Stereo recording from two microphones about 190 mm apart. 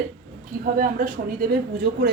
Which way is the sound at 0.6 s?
50° right (ahead or behind).